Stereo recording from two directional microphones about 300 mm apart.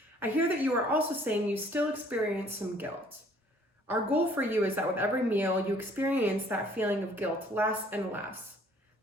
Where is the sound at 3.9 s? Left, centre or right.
Centre.